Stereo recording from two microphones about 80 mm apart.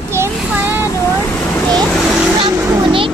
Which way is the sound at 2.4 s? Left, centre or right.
Right.